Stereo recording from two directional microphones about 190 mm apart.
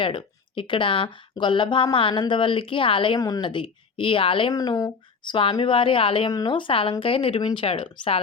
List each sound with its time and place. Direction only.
0.0 s speech: 25° left (ahead or behind)